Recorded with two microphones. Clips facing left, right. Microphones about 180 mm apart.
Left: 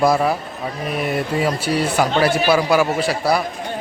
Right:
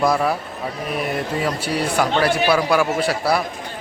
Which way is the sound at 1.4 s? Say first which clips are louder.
Left 4 dB; 5° left (ahead or behind).